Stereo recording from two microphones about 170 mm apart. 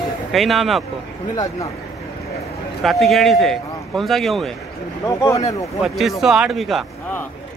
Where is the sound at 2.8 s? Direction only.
Centre (ahead or behind).